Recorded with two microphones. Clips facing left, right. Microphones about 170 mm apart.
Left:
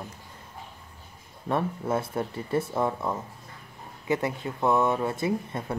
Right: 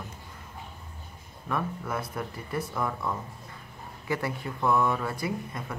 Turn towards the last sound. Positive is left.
turn(degrees=25)  # may be behind; listen again after turning